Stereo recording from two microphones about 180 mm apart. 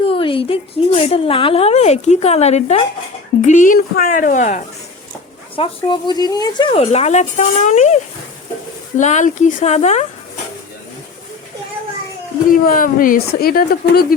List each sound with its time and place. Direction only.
0.0 s a woman's voice: 30° left (ahead or behind)
5.5 s a woman's voice: 30° left (ahead or behind)
9.0 s a woman's voice: 45° left (ahead or behind)
12.5 s a woman's voice: 50° left (ahead or behind)